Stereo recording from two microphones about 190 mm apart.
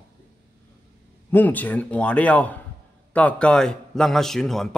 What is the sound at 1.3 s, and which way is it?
A man's voice, 10° left (ahead or behind).